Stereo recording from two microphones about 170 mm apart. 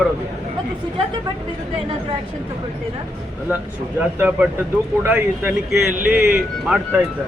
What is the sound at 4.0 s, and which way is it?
Speech, 10° right (ahead or behind).